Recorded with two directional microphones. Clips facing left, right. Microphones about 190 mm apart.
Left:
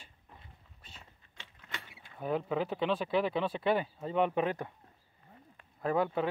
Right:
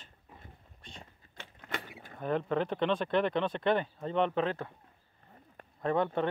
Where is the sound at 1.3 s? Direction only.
50° right (ahead or behind).